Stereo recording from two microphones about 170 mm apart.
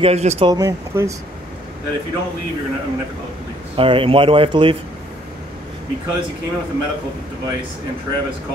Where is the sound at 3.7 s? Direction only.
30° right (ahead or behind).